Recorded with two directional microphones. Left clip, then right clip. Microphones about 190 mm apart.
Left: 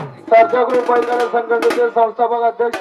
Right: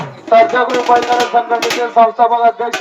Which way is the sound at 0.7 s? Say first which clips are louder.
Right 3 dB; 45° left (ahead or behind).